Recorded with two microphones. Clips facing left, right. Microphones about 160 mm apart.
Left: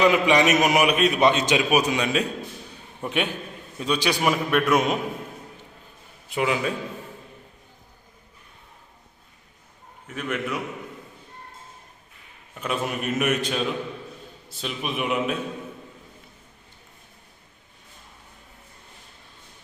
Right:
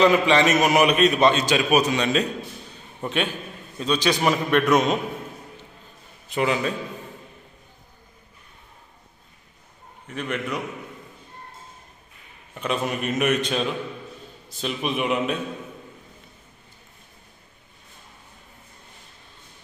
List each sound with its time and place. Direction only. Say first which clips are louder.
0.0 s a man's voice: right 1 dB; 15° left (ahead or behind)
6.2 s a man's voice: right 1 dB; 10° left (ahead or behind)
10.0 s a man's voice: even; 5° left (ahead or behind)
12.5 s a man's voice: right 2 dB; 5° left (ahead or behind)